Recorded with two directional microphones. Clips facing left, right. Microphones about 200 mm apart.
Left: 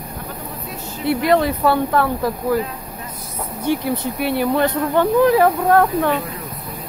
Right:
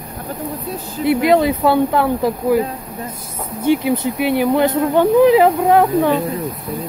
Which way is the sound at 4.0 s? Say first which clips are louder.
Right 3 dB; 15° right (ahead or behind).